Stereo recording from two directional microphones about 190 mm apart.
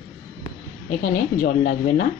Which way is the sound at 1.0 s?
45° left (ahead or behind).